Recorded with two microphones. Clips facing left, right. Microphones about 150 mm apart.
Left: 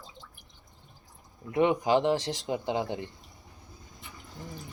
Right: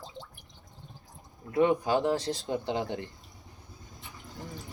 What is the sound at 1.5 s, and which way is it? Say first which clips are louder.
Speech: left 1 dB; 20° left (ahead or behind).